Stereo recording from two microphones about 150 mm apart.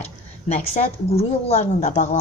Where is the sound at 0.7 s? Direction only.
45° left (ahead or behind).